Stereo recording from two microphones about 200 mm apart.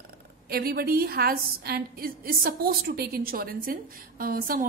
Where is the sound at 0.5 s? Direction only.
50° right (ahead or behind).